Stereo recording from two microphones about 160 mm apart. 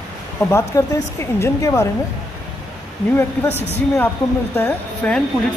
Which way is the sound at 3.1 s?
15° left (ahead or behind).